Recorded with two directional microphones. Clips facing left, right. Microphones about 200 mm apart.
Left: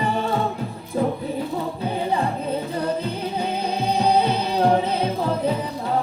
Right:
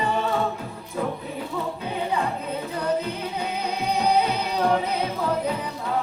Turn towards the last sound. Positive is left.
turn(degrees=30)  # may be behind; listen again after turning